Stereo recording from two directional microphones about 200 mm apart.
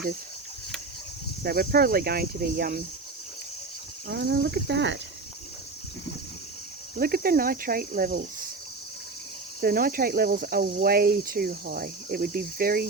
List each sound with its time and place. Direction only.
1.5 s speech: 50° right (ahead or behind)
4.3 s speech: 55° right (ahead or behind)
6.9 s speech: 50° right (ahead or behind)
9.6 s speech: 45° right (ahead or behind)